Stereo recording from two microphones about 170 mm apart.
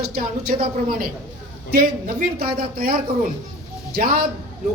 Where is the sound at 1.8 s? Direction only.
65° right (ahead or behind).